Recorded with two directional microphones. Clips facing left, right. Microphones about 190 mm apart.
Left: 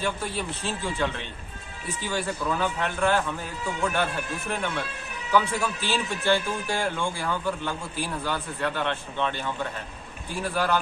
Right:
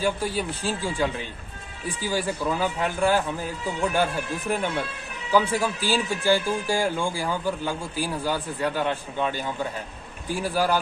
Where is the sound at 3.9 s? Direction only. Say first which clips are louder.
Right 3 dB; 10° right (ahead or behind).